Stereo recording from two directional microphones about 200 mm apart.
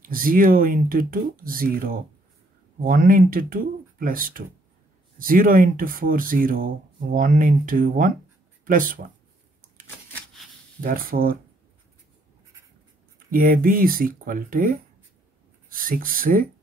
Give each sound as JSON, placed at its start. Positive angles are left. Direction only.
{"t": 0.0, "sound": "speech", "side_deg": -45}
{"t": 10.8, "sound": "speech", "side_deg": -45}
{"t": 13.3, "sound": "speech", "side_deg": -45}